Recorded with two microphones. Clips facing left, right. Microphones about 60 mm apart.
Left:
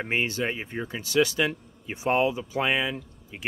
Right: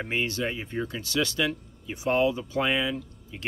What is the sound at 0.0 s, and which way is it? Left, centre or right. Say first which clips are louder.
Speech: left 1 dB; left.